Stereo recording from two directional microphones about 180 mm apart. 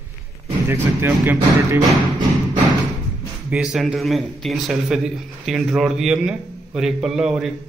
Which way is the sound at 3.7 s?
Centre (ahead or behind).